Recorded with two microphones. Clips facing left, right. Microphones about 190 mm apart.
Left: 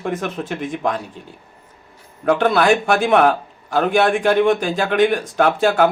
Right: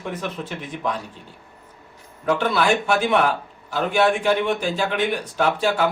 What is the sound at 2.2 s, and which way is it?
Speech, 60° left (ahead or behind).